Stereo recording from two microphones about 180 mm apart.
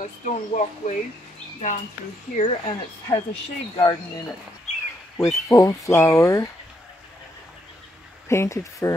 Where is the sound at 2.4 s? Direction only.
35° left (ahead or behind).